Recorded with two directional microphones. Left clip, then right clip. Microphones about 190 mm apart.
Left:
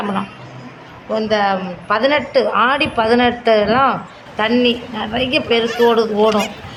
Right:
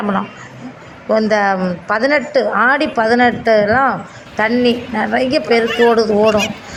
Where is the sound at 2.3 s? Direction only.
15° right (ahead or behind).